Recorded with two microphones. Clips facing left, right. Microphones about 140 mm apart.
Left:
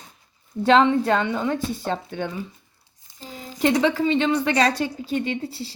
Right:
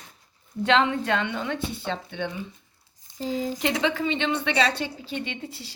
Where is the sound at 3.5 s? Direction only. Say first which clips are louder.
Left 11 dB; 40° left (ahead or behind).